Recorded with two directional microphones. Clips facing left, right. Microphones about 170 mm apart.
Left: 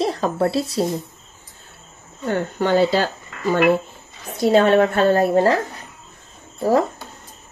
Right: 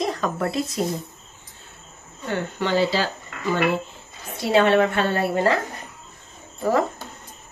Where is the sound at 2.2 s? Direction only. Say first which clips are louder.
Left 5 dB; 45° left (ahead or behind).